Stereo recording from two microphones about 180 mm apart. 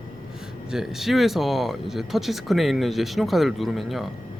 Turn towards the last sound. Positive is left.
turn(degrees=0)  # may be behind; listen again after turning